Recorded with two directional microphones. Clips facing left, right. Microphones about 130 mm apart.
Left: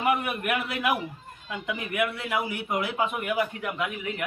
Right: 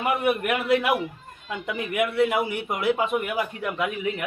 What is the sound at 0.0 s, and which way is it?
Speech, 25° right (ahead or behind).